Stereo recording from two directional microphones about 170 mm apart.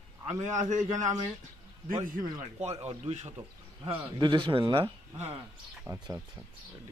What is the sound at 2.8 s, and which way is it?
Speech, 40° right (ahead or behind).